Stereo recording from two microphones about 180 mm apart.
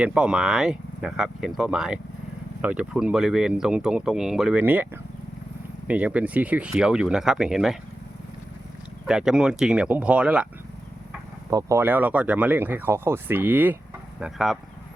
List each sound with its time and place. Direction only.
0.0 s speech: 5° right (ahead or behind)
5.9 s speech: 10° right (ahead or behind)
9.0 s speech: 5° right (ahead or behind)
11.5 s speech: 15° right (ahead or behind)